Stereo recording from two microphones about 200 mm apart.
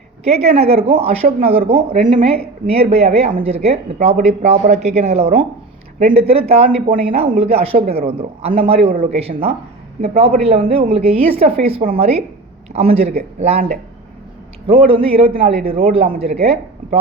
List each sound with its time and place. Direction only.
0.3 s a man's voice: 30° right (ahead or behind)
7.8 s speech: 50° right (ahead or behind)
8.0 s a man's voice: 30° right (ahead or behind)
14.7 s a man's voice: 30° right (ahead or behind)